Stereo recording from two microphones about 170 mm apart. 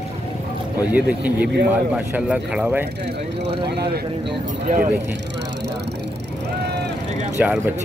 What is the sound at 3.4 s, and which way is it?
Speech, 75° right (ahead or behind).